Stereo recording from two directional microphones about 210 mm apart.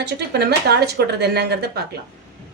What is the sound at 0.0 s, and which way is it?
Speech, 50° right (ahead or behind).